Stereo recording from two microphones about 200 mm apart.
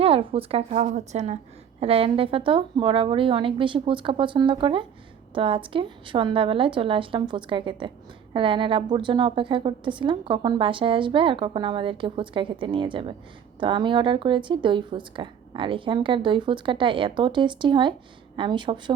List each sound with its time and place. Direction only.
0.0 s a woman's voice: 25° right (ahead or behind)